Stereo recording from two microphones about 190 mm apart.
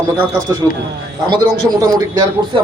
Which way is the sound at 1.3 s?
20° right (ahead or behind).